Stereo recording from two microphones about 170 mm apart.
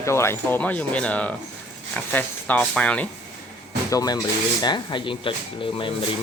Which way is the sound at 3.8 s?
20° left (ahead or behind).